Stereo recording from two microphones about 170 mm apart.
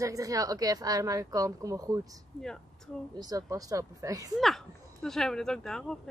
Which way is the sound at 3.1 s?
25° right (ahead or behind).